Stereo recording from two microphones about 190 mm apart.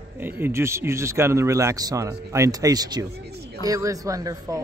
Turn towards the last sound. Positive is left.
turn(degrees=-20)  # may be behind; listen again after turning